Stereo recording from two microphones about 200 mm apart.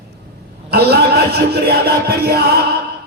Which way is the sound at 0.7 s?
50° right (ahead or behind).